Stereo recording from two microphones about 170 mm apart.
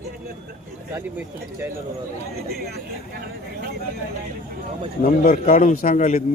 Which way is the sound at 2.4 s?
65° right (ahead or behind).